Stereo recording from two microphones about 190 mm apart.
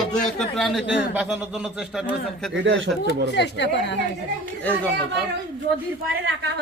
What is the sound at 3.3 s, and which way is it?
Speech, 65° left (ahead or behind).